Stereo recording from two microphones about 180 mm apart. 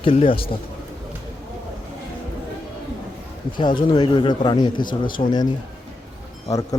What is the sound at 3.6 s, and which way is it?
A man's voice, 25° left (ahead or behind).